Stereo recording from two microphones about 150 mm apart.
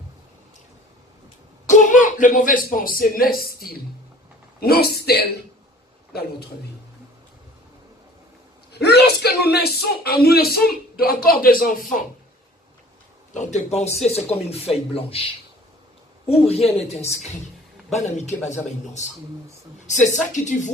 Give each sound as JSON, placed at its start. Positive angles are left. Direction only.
{"t": 1.6, "sound": "a man's voice", "side_deg": 55}
{"t": 8.7, "sound": "a man's voice", "side_deg": 90}
{"t": 13.3, "sound": "a man's voice", "side_deg": 50}
{"t": 16.6, "sound": "a man's voice", "side_deg": 45}